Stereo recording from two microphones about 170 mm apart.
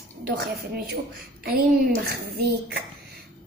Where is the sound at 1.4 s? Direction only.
65° right (ahead or behind).